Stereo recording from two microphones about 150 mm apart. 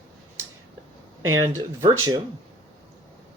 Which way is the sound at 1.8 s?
25° right (ahead or behind).